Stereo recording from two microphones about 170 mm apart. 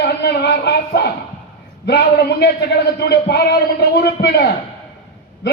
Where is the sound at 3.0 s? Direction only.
75° left (ahead or behind).